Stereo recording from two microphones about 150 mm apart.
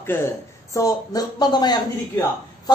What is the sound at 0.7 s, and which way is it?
A man's voice, 25° left (ahead or behind).